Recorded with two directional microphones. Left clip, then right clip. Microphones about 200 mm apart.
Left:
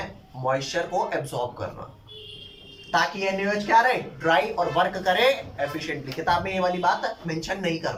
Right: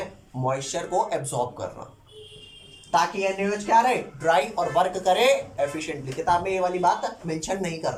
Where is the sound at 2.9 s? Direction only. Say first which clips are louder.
Right 1 dB; 15° right (ahead or behind).